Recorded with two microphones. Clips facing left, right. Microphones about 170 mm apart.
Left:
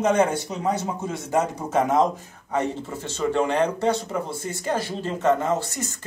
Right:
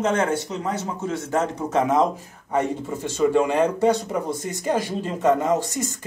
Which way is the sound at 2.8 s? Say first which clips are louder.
Right 5 dB; 15° right (ahead or behind).